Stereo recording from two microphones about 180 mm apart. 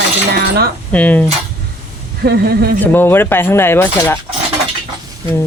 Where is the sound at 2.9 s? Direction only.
10° left (ahead or behind).